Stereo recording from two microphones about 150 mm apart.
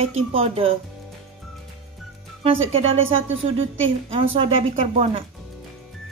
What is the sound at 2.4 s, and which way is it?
Speech, 40° right (ahead or behind).